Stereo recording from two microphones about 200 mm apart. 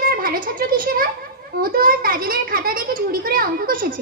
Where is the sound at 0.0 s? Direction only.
45° right (ahead or behind).